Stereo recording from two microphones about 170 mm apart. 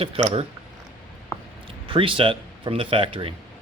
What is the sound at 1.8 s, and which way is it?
Speech, 30° right (ahead or behind).